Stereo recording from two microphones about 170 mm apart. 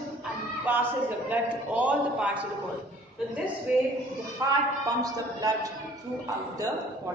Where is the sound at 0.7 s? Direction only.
10° right (ahead or behind).